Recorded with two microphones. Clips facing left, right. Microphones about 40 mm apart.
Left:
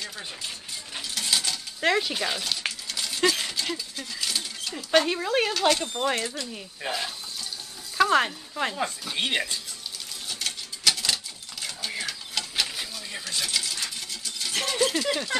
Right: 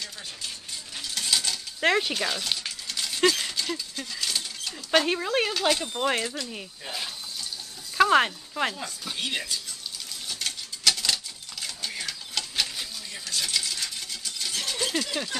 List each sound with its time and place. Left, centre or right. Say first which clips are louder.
1.1 s a sound: even; centre
1.8 s speech: right 1 dB; centre
2.1 s speech: even; centre
2.9 s a sound: right 2 dB; centre
4.9 s speech: left 1 dB; centre
6.9 s water: left 4 dB; centre
8.0 s speech: right 1 dB; centre
9.1 s speech: left 1 dB; left
10.2 s tick-tock: left 1 dB; centre
11.6 s sewing machine: left 2 dB; centre
13.4 s coin: even; centre
14.7 s a sound: left 4 dB; centre